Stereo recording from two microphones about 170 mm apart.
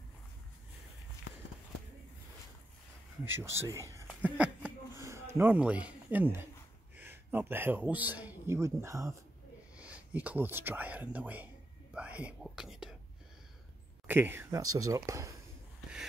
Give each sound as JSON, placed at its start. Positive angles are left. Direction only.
{"t": 3.3, "sound": "speech", "side_deg": -15}
{"t": 4.1, "sound": "a sound", "side_deg": -5}
{"t": 5.0, "sound": "a man's voice", "side_deg": -15}
{"t": 9.8, "sound": "speech", "side_deg": -5}
{"t": 14.0, "sound": "speech", "side_deg": -10}